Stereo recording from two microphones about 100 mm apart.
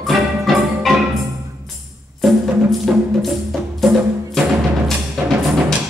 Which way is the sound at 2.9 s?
10° right (ahead or behind).